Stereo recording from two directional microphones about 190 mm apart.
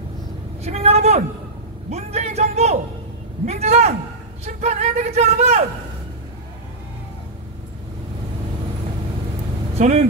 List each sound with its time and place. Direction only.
0.7 s speech: 35° right (ahead or behind)
9.8 s speech: 40° right (ahead or behind)